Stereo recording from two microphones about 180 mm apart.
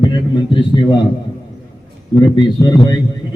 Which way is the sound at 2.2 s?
25° left (ahead or behind).